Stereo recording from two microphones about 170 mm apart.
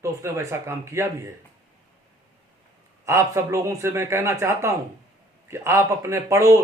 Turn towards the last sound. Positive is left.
turn(degrees=-15)  # may be behind; listen again after turning